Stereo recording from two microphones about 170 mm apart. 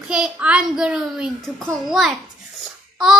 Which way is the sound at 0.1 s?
5° right (ahead or behind).